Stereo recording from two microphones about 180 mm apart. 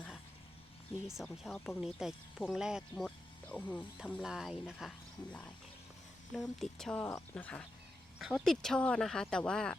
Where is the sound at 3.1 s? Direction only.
10° left (ahead or behind).